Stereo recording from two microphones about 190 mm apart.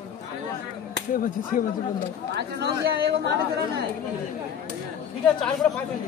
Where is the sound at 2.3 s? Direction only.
60° right (ahead or behind).